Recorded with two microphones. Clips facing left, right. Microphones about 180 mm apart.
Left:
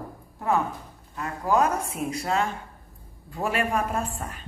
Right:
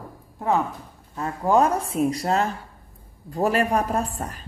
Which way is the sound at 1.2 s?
30° right (ahead or behind).